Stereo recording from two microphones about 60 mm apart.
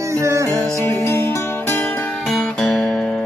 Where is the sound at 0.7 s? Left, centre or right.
Left.